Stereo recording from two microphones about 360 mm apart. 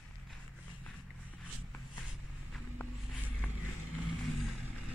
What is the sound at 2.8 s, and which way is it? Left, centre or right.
Vehicle, centre.